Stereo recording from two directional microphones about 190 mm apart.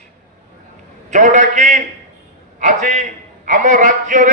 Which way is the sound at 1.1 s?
40° right (ahead or behind).